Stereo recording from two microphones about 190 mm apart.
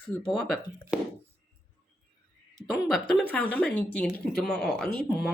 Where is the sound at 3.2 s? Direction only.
10° left (ahead or behind).